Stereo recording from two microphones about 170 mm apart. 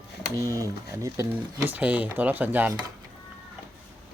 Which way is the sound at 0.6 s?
20° right (ahead or behind).